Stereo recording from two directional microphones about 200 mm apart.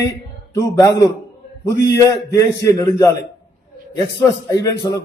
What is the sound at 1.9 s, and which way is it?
A man's voice, 15° left (ahead or behind).